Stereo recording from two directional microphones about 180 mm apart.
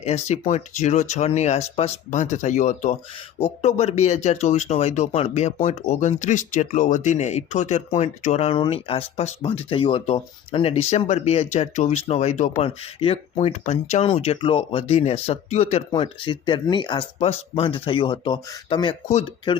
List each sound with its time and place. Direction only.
0.0 s speech: 40° left (ahead or behind)